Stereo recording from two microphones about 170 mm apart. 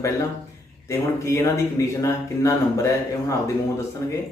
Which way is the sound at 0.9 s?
15° left (ahead or behind).